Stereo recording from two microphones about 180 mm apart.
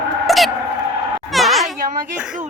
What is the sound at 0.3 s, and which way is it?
Cat, centre (ahead or behind).